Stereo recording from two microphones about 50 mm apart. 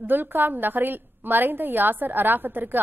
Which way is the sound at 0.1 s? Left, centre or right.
Right.